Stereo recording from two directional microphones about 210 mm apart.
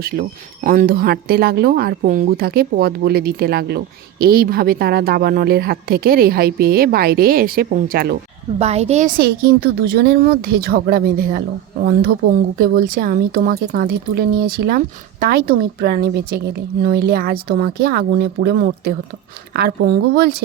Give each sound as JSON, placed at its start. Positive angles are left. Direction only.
{"t": 0.0, "sound": "speech", "side_deg": -45}
{"t": 8.5, "sound": "speech", "side_deg": -30}